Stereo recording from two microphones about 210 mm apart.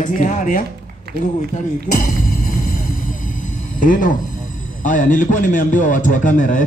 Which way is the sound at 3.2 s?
40° left (ahead or behind).